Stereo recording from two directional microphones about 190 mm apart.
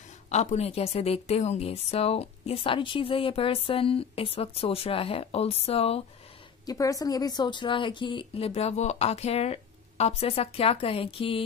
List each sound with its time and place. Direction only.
0.3 s a woman's voice: 35° left (ahead or behind)
6.6 s speech: 20° left (ahead or behind)